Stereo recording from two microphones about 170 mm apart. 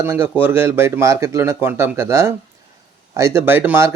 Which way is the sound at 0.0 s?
15° right (ahead or behind).